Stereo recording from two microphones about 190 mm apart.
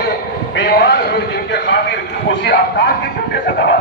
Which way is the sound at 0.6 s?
55° left (ahead or behind).